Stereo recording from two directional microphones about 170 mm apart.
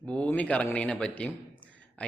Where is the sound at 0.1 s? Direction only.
5° left (ahead or behind).